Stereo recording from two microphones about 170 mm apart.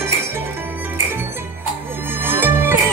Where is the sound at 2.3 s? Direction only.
10° right (ahead or behind).